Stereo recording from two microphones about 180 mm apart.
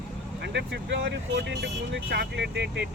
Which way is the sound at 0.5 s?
75° right (ahead or behind).